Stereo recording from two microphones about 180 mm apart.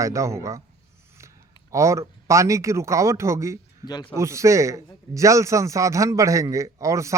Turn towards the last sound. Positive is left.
turn(degrees=-15)  # may be behind; listen again after turning